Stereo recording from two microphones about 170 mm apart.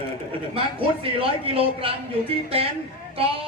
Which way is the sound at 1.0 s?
35° right (ahead or behind).